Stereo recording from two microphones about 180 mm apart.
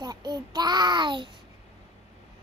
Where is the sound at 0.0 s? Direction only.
20° right (ahead or behind).